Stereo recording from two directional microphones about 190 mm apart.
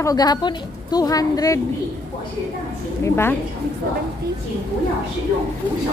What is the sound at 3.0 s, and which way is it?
Speech, 15° left (ahead or behind).